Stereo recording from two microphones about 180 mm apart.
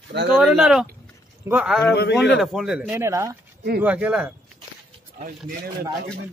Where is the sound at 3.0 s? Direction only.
15° right (ahead or behind).